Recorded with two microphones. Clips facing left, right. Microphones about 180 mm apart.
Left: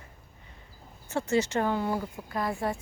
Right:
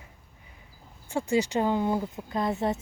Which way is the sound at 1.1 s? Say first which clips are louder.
Right 1 dB; 15° right (ahead or behind).